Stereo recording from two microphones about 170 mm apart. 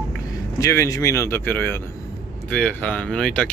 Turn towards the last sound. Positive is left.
turn(degrees=5)  # may be behind; listen again after turning